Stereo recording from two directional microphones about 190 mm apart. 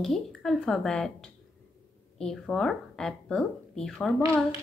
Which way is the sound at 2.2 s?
5° left (ahead or behind).